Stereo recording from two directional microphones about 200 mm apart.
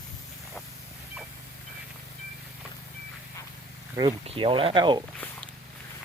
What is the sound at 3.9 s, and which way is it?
Speech, 25° right (ahead or behind).